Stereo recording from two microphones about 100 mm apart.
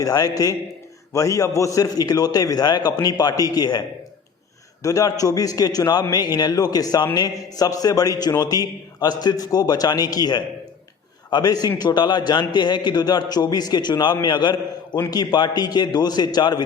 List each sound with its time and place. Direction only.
0.0 s a man's voice: 35° left (ahead or behind)